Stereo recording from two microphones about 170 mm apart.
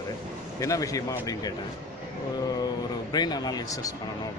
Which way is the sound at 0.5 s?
20° left (ahead or behind).